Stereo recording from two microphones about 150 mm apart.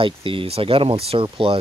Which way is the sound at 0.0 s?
35° right (ahead or behind).